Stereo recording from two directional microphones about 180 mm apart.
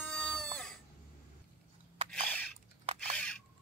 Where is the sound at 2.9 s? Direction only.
30° right (ahead or behind).